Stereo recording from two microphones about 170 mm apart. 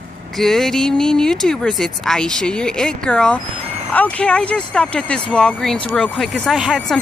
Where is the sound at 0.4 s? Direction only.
Centre (ahead or behind).